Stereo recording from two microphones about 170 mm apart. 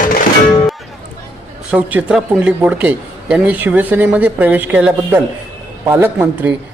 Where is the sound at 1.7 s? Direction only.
10° right (ahead or behind).